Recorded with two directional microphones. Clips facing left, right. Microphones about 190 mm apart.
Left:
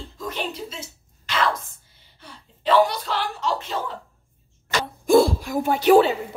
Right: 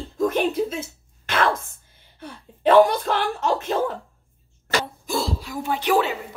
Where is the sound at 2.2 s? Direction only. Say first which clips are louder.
Right 8 dB; 50° right (ahead or behind).